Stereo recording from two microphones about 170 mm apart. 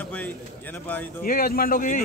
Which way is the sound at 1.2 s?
60° left (ahead or behind).